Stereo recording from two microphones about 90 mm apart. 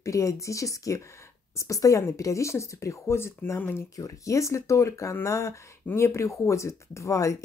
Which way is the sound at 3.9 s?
40° left (ahead or behind).